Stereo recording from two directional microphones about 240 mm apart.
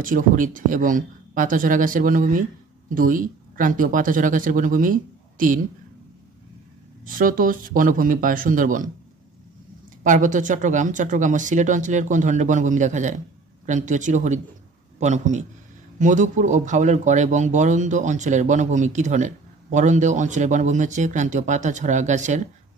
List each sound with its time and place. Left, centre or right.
0.0 s speech: right
7.1 s speech: right
10.0 s a man's voice: right